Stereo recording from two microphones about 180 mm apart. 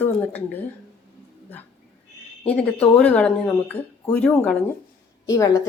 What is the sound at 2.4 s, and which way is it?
Speech, 5° left (ahead or behind).